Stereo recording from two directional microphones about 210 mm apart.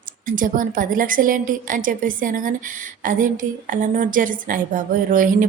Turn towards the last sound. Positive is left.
turn(degrees=-40)  # may be behind; listen again after turning